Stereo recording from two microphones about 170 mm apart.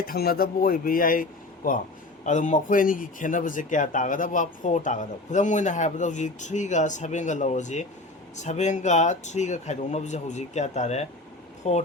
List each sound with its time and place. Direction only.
0.1 s speech: 60° left (ahead or behind); by 11.8 s 40° left (ahead or behind)